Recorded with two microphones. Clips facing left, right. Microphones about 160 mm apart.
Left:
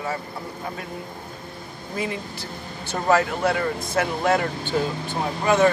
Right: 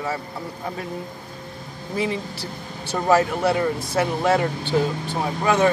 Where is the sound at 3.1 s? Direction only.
30° right (ahead or behind).